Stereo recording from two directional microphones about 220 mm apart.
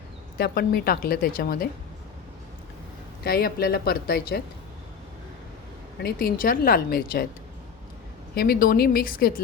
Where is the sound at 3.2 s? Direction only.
45° left (ahead or behind).